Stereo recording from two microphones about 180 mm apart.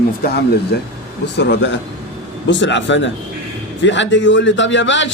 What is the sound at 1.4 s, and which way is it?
Speech, 75° left (ahead or behind).